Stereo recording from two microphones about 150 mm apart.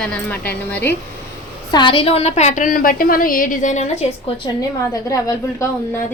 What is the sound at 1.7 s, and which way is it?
A woman's voice, 30° left (ahead or behind).